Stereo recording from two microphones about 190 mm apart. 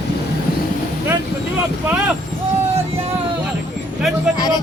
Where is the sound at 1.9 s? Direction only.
5° right (ahead or behind).